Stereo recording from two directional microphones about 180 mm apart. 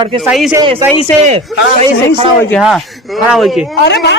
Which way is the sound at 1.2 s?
40° right (ahead or behind).